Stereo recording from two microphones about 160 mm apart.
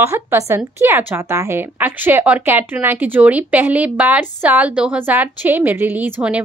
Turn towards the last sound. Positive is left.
turn(degrees=-10)  # may be behind; listen again after turning